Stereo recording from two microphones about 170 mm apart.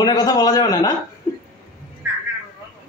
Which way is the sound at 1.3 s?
15° left (ahead or behind).